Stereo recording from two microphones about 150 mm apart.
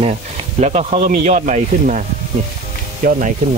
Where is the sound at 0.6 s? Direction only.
50° right (ahead or behind).